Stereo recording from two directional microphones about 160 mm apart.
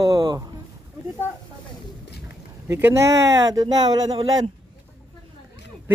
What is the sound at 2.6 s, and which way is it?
Speech, 15° right (ahead or behind).